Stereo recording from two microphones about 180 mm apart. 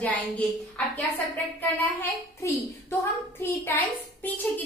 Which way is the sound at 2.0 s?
15° left (ahead or behind).